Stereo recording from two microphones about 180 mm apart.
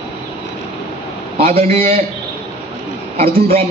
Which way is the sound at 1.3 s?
35° right (ahead or behind).